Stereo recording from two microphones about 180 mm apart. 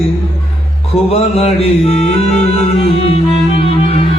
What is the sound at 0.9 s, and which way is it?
Speech, 35° left (ahead or behind).